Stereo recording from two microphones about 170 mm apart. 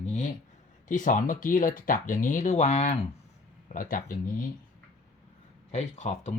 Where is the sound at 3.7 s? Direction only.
55° left (ahead or behind).